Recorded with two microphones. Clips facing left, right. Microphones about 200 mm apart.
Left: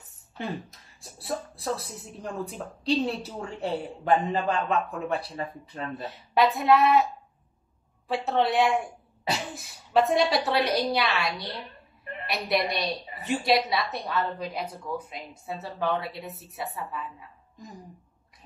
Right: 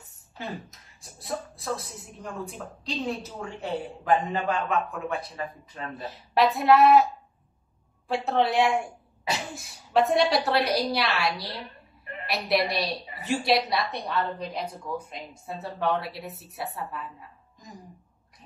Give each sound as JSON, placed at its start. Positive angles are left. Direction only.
{"t": 1.1, "sound": "a man's voice", "side_deg": 35}
{"t": 5.9, "sound": "a woman's voice", "side_deg": 0}
{"t": 8.3, "sound": "a woman's voice", "side_deg": 0}